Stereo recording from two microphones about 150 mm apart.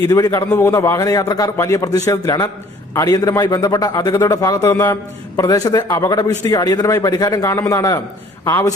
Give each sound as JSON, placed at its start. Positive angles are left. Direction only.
{"t": 0.1, "sound": "a man's voice", "side_deg": 20}